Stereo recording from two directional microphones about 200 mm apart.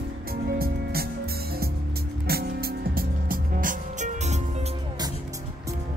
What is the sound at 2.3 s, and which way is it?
Music, 50° right (ahead or behind).